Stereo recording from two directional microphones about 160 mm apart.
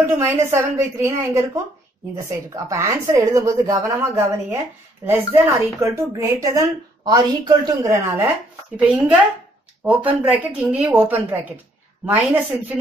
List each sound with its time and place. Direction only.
0.2 s a woman's voice: 15° right (ahead or behind)